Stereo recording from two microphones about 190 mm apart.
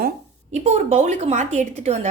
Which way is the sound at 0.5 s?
35° right (ahead or behind).